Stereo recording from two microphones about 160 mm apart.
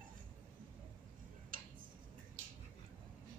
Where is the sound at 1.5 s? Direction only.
60° right (ahead or behind).